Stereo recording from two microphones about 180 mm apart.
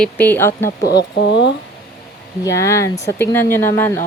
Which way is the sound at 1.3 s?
75° left (ahead or behind).